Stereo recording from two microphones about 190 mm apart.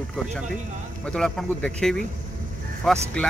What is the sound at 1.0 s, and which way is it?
Speech, 5° left (ahead or behind).